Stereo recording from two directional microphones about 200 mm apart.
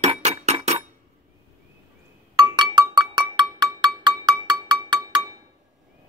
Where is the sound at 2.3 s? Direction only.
20° right (ahead or behind).